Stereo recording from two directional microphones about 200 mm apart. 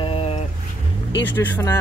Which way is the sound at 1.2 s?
10° left (ahead or behind).